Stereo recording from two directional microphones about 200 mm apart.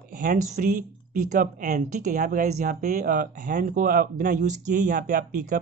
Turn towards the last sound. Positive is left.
turn(degrees=-40)  # may be behind; listen again after turning